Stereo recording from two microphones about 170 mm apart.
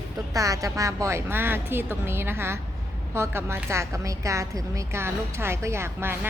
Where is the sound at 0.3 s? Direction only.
20° right (ahead or behind).